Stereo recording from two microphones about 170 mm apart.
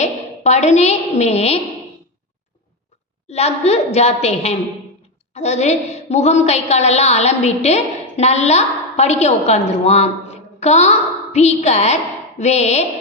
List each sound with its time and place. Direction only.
0.0 s a woman's voice: 40° left (ahead or behind)
3.2 s a woman's voice: 40° left (ahead or behind)